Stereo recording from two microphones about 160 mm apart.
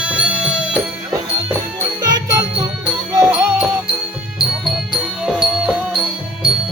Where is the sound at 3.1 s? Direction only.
20° right (ahead or behind).